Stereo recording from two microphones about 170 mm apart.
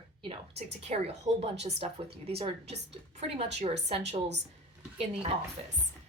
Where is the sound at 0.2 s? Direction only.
30° right (ahead or behind).